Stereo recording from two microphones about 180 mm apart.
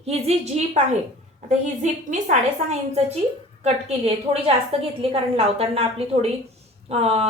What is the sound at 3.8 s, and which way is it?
A woman's voice, 35° right (ahead or behind).